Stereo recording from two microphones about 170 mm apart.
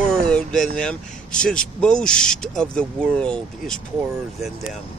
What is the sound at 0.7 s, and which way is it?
Speech, 5° left (ahead or behind).